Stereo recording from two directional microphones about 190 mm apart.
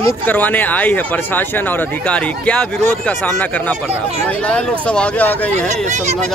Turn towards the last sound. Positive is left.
turn(degrees=-35)  # may be behind; listen again after turning